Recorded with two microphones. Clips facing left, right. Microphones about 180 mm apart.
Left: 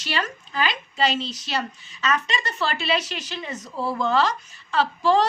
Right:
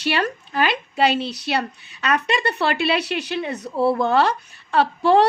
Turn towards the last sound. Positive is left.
turn(degrees=-60)  # may be behind; listen again after turning